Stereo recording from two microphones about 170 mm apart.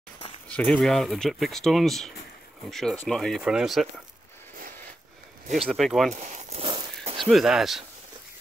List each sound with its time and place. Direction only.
0.5 s speech: 5° left (ahead or behind)
5.7 s speech: centre (ahead or behind)
6.1 s speech: 40° right (ahead or behind)
6.6 s walk: 30° right (ahead or behind)
7.2 s speech: centre (ahead or behind)